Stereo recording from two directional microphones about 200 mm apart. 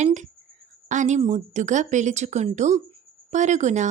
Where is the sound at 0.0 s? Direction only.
35° right (ahead or behind).